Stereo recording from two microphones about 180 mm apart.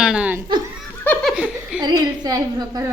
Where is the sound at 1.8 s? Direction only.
25° right (ahead or behind).